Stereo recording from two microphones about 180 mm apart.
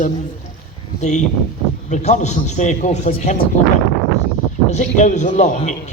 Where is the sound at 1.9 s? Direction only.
40° left (ahead or behind).